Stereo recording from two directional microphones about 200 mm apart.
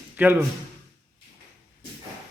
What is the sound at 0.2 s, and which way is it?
Speech, 10° right (ahead or behind).